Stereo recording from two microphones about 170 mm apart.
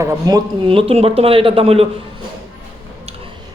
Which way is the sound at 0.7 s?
35° right (ahead or behind).